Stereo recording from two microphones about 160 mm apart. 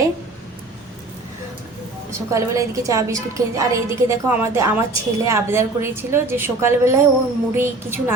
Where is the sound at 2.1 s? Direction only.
20° right (ahead or behind).